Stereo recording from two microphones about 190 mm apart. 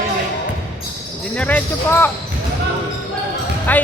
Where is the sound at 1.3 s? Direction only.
10° left (ahead or behind).